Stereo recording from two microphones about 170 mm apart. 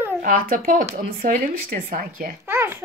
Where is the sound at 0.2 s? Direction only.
55° right (ahead or behind).